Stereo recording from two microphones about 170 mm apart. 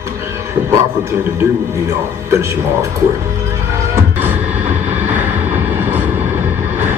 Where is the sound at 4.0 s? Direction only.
10° right (ahead or behind).